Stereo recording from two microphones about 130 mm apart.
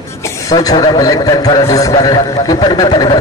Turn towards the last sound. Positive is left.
turn(degrees=30)  # may be behind; listen again after turning